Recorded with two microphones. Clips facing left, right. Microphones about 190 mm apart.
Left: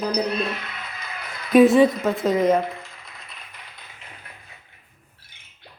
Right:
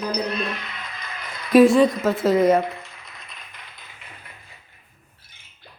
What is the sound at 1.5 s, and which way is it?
A woman's voice, centre (ahead or behind).